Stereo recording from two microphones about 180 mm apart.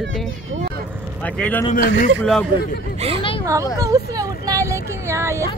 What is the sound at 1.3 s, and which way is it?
A man's voice, 10° left (ahead or behind).